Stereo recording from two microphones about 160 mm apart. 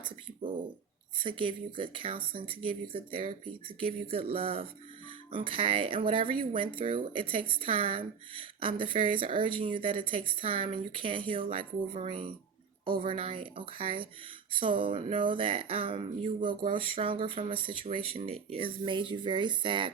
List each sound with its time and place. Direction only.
1.2 s speech: 30° right (ahead or behind)